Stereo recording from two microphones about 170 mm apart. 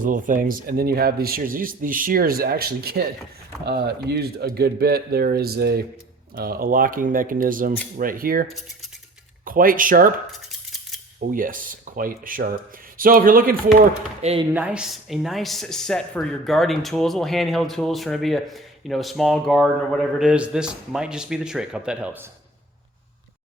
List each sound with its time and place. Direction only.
0.0 s speech: 50° right (ahead or behind)
3.7 s speech: 75° right (ahead or behind); by 10.1 s 55° right (ahead or behind)
10.3 s a sound: centre (ahead or behind)
11.2 s speech: 55° right (ahead or behind)
14.2 s speech: 40° right (ahead or behind)
14.5 s speech: 5° right (ahead or behind)